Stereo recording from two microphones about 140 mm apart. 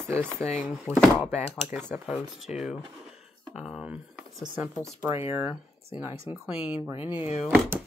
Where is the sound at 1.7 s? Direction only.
10° right (ahead or behind).